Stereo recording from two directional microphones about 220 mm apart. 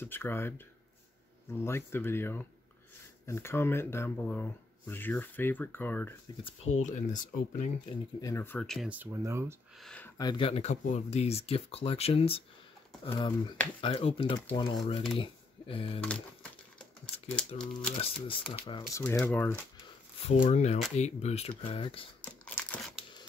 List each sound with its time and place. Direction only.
0.0 s speech: 10° left (ahead or behind)
1.6 s speech: 10° left (ahead or behind)
6.8 s speech: 35° left (ahead or behind)
8.2 s speech: 15° left (ahead or behind); by 9.6 s 10° right (ahead or behind)
9.8 s speech: 5° left (ahead or behind); by 16.0 s 25° left (ahead or behind)
17.5 s speech: 25° left (ahead or behind)
19.0 s speech: 10° left (ahead or behind)
20.2 s speech: 35° left (ahead or behind)
22.2 s crumpling: 5° left (ahead or behind)